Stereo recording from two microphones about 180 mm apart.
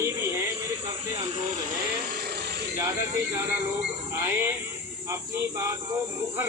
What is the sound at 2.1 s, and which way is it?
Vehicle, 60° right (ahead or behind).